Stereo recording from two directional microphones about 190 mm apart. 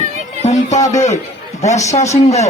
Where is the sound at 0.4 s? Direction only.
40° left (ahead or behind).